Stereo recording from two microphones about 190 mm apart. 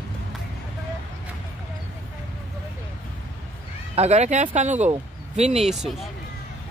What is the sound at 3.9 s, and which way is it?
Speech, 35° right (ahead or behind).